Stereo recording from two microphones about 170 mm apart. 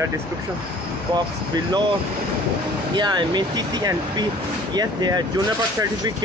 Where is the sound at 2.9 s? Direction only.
25° right (ahead or behind).